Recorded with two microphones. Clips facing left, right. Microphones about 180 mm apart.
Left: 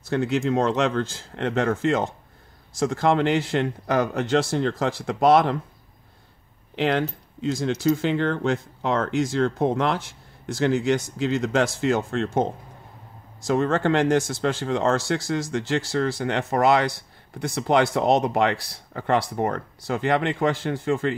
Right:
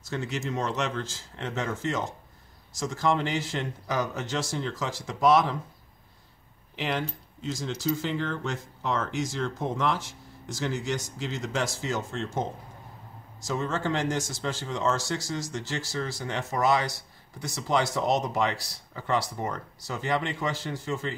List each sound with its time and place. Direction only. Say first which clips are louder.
0.0 s speech: left 9 dB; 60° left (ahead or behind)
6.7 s speech: left 8 dB; 60° left (ahead or behind)
13.5 s speech: left 8 dB; 60° left (ahead or behind)